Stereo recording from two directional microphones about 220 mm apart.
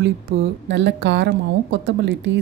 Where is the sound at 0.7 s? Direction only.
50° right (ahead or behind).